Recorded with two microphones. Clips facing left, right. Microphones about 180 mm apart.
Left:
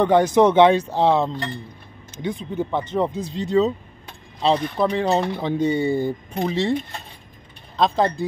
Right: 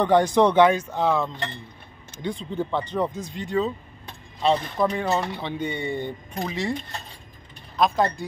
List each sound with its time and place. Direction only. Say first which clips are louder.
0.0 s speech: left 3 dB; 20° left (ahead or behind)
2.0 s speech: left 3 dB; 20° left (ahead or behind); by 5.8 s 40° left (ahead or behind)
5.9 s speech: left 6 dB; 5° left (ahead or behind)
6.4 s speech: left 6 dB; 25° left (ahead or behind)
7.7 s speech: left 2 dB; 25° left (ahead or behind)